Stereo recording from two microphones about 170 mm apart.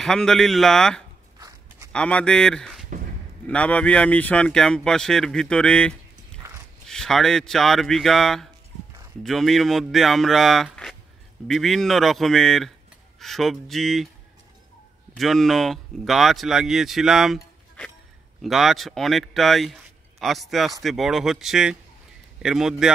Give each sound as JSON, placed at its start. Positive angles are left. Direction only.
{"t": 0.0, "sound": "speech", "side_deg": 5}
{"t": 15.1, "sound": "speech", "side_deg": 0}
{"t": 18.4, "sound": "speech", "side_deg": 0}